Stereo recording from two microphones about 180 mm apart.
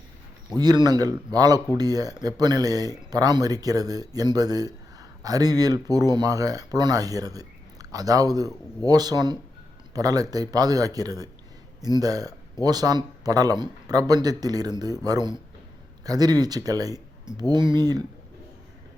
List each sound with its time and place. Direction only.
0.5 s speech: 20° right (ahead or behind)